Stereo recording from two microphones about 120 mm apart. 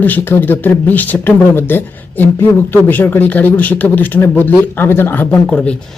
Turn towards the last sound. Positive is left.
turn(degrees=15)  # may be behind; listen again after turning